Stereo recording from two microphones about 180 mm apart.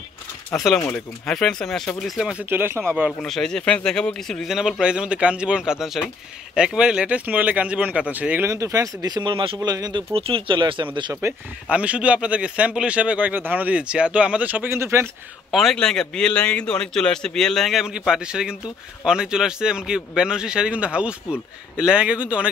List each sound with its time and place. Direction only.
0.5 s speech: 5° left (ahead or behind)
3.2 s speech: 5° left (ahead or behind); by 10.9 s 25° right (ahead or behind)
11.1 s speech: 10° right (ahead or behind)
15.5 s speech: 5° left (ahead or behind)